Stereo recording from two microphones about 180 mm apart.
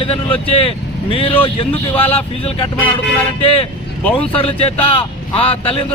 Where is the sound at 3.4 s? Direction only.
30° left (ahead or behind).